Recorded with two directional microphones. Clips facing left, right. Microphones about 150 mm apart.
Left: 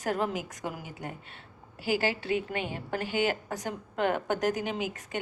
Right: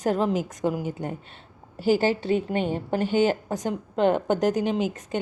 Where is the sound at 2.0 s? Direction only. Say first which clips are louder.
Right 6 dB; 30° right (ahead or behind).